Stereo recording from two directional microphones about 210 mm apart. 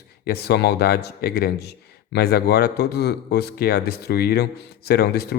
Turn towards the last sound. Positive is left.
turn(degrees=50)  # may be behind; listen again after turning